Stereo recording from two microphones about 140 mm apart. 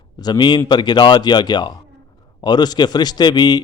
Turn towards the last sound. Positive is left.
turn(degrees=30)  # may be behind; listen again after turning